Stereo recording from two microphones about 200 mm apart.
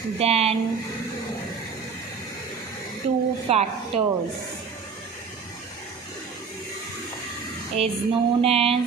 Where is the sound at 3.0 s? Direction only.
30° right (ahead or behind).